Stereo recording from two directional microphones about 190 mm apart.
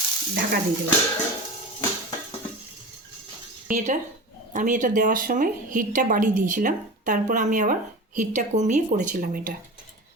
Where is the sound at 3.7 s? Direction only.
40° right (ahead or behind).